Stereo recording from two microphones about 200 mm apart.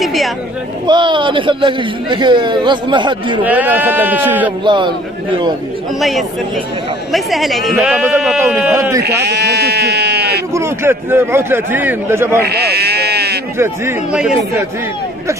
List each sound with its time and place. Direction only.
0.0 s chatter: centre (ahead or behind)
0.8 s speech: 25° right (ahead or behind)
3.4 s a man's voice: 10° right (ahead or behind)
4.6 s speech: 25° right (ahead or behind)
5.9 s speech: centre (ahead or behind)
8.7 s a man's voice: 15° right (ahead or behind)
9.0 s sheep: 55° right (ahead or behind)
10.5 s a man's voice: 15° right (ahead or behind)
12.4 s sheep: 55° right (ahead or behind)
13.6 s a man's voice: 10° right (ahead or behind)